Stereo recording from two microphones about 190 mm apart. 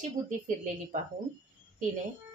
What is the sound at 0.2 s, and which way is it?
Speech, 40° right (ahead or behind).